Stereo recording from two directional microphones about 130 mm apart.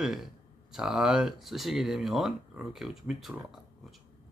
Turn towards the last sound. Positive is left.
turn(degrees=-5)  # may be behind; listen again after turning